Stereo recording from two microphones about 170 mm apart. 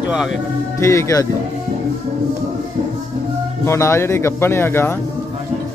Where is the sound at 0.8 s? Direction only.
20° left (ahead or behind).